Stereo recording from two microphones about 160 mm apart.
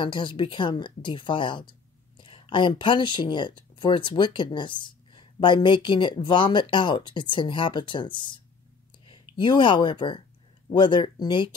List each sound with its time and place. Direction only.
0.0 s speech: 30° left (ahead or behind)